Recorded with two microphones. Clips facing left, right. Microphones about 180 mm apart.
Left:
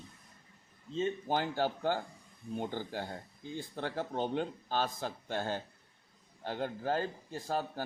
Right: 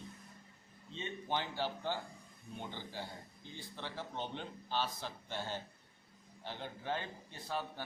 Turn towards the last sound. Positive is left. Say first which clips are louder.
# left 6 dB
turn(degrees=40)  # may be behind; listen again after turning